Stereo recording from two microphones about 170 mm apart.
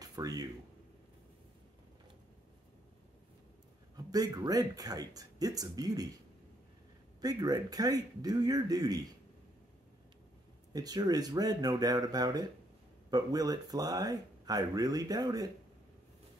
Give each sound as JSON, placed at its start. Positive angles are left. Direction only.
{"t": 0.0, "sound": "a sound", "side_deg": -20}
{"t": 3.9, "sound": "speech", "side_deg": -20}
{"t": 7.2, "sound": "speech", "side_deg": -20}
{"t": 10.7, "sound": "speech", "side_deg": -20}